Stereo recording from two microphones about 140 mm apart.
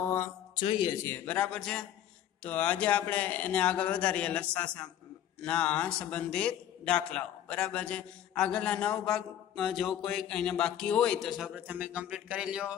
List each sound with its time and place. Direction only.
0.0 s mantra: 15° left (ahead or behind)
0.6 s speech: 35° left (ahead or behind)
1.0 s a man's voice: 10° left (ahead or behind); by 12.7 s 5° right (ahead or behind)